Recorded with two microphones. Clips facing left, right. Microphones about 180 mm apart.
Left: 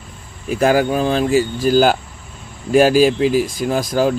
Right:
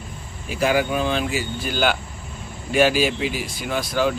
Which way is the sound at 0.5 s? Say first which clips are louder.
Left 6 dB; 45° left (ahead or behind).